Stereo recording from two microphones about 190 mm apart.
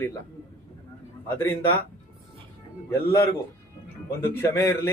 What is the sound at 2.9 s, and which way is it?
Speech, 15° left (ahead or behind).